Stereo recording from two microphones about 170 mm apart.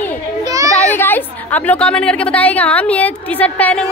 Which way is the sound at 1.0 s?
10° left (ahead or behind).